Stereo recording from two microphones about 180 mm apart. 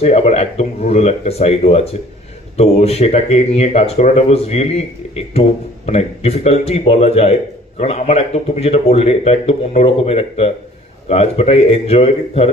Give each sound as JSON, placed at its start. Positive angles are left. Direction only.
{"t": 0.0, "sound": "speech", "side_deg": 35}